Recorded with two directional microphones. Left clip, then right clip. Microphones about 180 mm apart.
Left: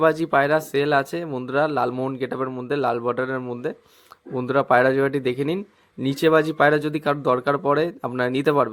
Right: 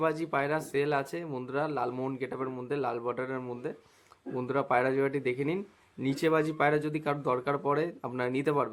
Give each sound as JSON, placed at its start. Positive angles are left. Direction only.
{"t": 0.0, "sound": "speech", "side_deg": 35}